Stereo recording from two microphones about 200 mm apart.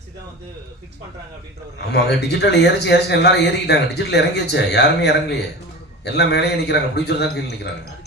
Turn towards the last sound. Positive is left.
turn(degrees=55)  # may be behind; listen again after turning